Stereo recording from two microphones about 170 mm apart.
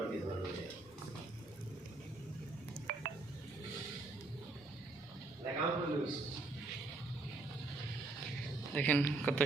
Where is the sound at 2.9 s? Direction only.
60° right (ahead or behind).